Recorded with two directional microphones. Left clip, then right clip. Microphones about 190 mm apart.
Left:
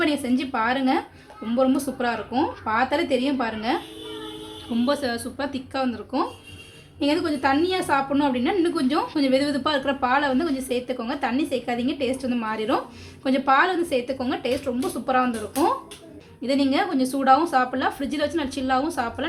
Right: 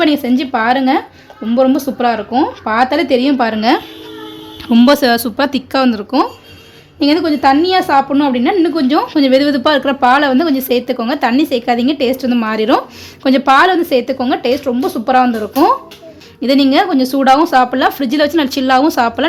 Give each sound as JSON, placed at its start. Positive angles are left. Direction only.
{"t": 0.0, "sound": "a woman's voice", "side_deg": -35}